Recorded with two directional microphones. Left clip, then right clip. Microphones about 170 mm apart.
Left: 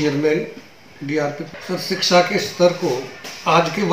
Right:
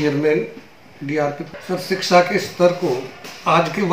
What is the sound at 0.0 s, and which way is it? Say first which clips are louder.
Speech: right 1 dB; 5° right (ahead or behind).